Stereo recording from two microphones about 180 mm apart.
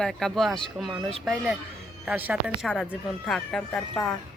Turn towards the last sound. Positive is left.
turn(degrees=10)  # may be behind; listen again after turning